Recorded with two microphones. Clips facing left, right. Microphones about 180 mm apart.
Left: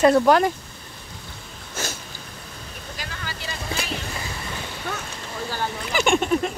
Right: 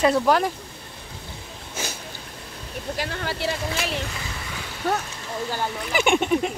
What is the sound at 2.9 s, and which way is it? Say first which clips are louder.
Speech: right 7 dB; 65° right (ahead or behind).